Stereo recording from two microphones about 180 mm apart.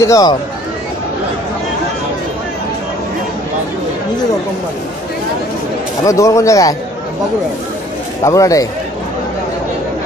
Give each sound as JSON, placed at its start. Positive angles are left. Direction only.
{"t": 0.0, "sound": "speech", "side_deg": 20}
{"t": 6.0, "sound": "speech", "side_deg": 15}
{"t": 8.2, "sound": "speech", "side_deg": 20}